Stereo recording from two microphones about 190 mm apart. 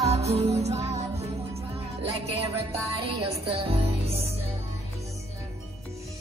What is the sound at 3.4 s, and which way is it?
Music, 30° right (ahead or behind).